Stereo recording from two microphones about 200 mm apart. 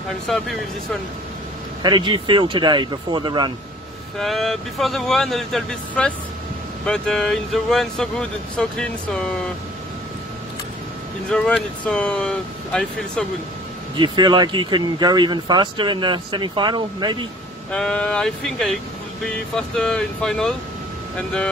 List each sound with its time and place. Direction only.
0.3 s speech: centre (ahead or behind)
1.8 s speech: 20° right (ahead or behind)
4.2 s speech: centre (ahead or behind)
11.2 s speech: 5° left (ahead or behind)
13.9 s speech: 20° right (ahead or behind)
17.6 s speech: 5° left (ahead or behind)